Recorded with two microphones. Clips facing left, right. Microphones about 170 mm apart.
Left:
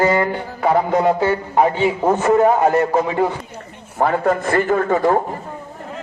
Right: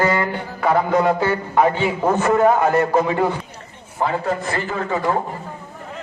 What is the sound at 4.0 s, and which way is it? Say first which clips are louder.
A man's voice: left 4 dB; 50° left (ahead or behind).